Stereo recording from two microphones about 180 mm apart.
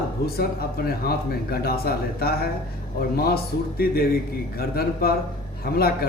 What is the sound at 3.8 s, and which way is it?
Speech, 55° left (ahead or behind).